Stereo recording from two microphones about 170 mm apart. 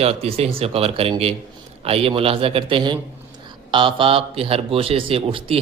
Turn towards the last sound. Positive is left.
turn(degrees=-30)  # may be behind; listen again after turning